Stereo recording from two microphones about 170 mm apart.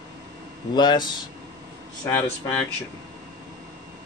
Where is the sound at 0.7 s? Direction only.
25° left (ahead or behind).